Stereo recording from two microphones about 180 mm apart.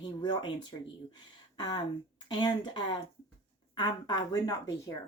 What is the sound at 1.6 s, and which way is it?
Speech, 25° left (ahead or behind).